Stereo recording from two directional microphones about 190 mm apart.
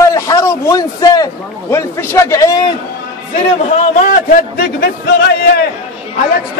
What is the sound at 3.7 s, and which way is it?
A man's voice, 45° left (ahead or behind).